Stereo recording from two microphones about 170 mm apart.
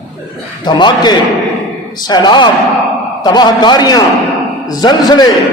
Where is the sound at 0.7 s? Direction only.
25° left (ahead or behind).